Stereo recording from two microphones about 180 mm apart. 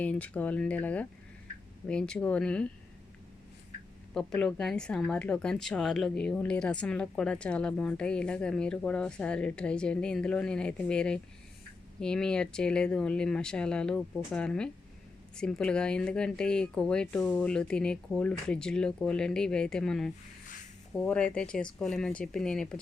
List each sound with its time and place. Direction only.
0.0 s speech: 5° left (ahead or behind)
4.1 s speech: 5° left (ahead or behind)